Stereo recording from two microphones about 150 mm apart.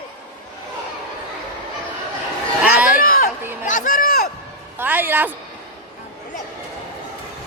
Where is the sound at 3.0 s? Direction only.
70° left (ahead or behind).